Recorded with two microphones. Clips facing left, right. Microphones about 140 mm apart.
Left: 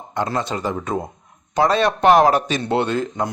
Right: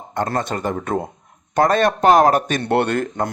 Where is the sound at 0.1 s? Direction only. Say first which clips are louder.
Right 1 dB; 50° right (ahead or behind).